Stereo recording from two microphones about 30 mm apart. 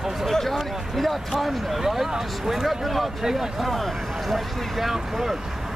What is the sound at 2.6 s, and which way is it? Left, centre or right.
Speech, centre.